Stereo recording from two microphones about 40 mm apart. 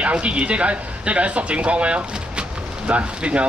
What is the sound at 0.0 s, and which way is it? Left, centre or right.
Speech, right.